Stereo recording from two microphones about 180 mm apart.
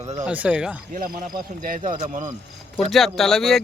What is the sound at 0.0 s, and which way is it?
Speech, 35° right (ahead or behind).